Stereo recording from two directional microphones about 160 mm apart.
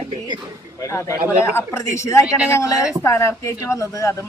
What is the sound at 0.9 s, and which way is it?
A woman's voice, 15° left (ahead or behind).